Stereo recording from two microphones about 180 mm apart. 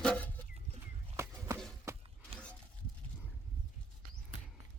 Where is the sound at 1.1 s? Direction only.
15° right (ahead or behind).